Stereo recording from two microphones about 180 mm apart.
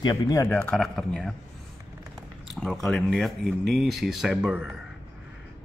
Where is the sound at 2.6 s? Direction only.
Centre (ahead or behind).